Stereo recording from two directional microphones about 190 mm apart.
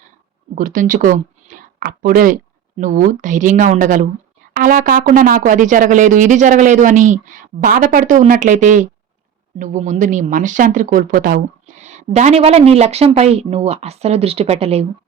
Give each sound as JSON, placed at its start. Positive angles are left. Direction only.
{"t": 0.5, "sound": "speech", "side_deg": -45}